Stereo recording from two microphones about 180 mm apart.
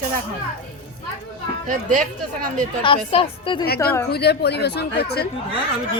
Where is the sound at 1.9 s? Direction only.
45° right (ahead or behind).